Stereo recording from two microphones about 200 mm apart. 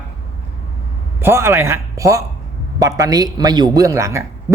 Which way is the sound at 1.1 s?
10° right (ahead or behind).